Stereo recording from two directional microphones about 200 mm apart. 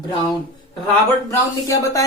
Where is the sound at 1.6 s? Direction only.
15° left (ahead or behind).